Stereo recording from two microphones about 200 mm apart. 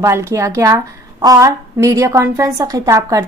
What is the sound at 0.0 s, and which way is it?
A woman's voice, 15° right (ahead or behind).